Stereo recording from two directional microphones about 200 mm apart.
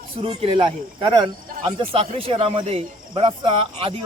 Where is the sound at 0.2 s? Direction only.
25° right (ahead or behind).